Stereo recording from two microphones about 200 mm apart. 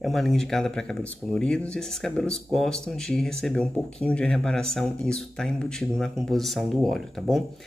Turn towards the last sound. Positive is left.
turn(degrees=0)  # may be behind; listen again after turning